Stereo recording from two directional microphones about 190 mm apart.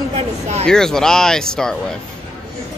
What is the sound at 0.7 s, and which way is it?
Speech, 5° left (ahead or behind).